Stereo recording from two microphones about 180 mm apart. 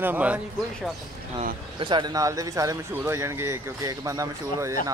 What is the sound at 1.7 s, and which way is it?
Speech, 25° right (ahead or behind).